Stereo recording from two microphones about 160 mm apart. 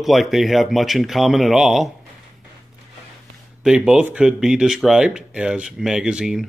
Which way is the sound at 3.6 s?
5° right (ahead or behind).